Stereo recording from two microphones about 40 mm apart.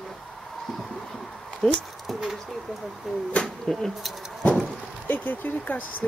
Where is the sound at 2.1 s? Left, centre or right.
Centre.